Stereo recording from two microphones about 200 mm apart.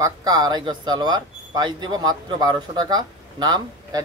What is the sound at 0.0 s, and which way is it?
Speech, 20° right (ahead or behind).